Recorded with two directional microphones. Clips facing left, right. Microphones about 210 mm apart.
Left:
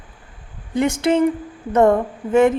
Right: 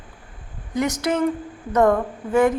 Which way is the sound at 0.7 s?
30° left (ahead or behind).